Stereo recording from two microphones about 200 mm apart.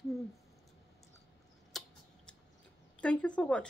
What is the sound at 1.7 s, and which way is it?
Tick-tock, centre (ahead or behind).